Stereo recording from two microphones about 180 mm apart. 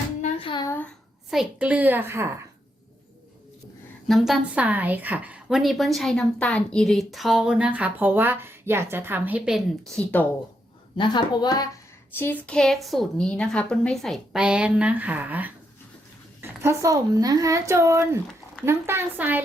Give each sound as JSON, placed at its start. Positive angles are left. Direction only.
{"t": 0.2, "sound": "a sound", "side_deg": 30}
{"t": 1.3, "sound": "a woman's voice", "side_deg": -5}
{"t": 4.0, "sound": "a woman's voice", "side_deg": 0}
{"t": 10.9, "sound": "a woman's voice", "side_deg": 25}
{"t": 12.1, "sound": "a woman's voice", "side_deg": 10}